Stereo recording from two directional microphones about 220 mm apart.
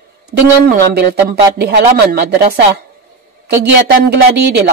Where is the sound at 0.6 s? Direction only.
45° right (ahead or behind).